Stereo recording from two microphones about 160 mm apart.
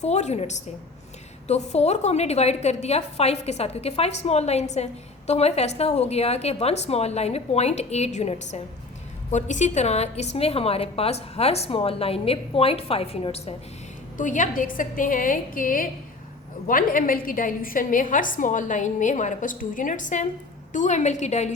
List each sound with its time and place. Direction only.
0.0 s a woman's voice: 45° left (ahead or behind)
14.2 s a woman's voice: 50° left (ahead or behind)